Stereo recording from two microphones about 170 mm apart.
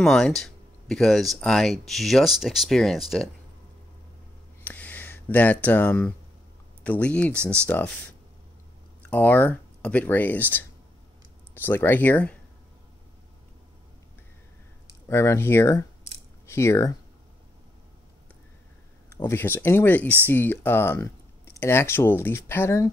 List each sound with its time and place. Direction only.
0.0 s speech: centre (ahead or behind)
4.6 s speech: 10° left (ahead or behind)
7.3 s speech: 15° right (ahead or behind)
7.6 s speech: 10° left (ahead or behind)
9.0 s speech: 10° left (ahead or behind)
11.5 s speech: 10° left (ahead or behind)
15.0 s speech: 15° left (ahead or behind)
19.1 s speech: 15° left (ahead or behind)